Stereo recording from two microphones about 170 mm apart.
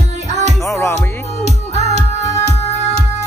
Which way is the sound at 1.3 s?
40° right (ahead or behind).